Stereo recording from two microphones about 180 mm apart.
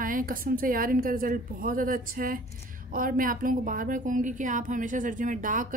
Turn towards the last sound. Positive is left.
turn(degrees=-45)  # may be behind; listen again after turning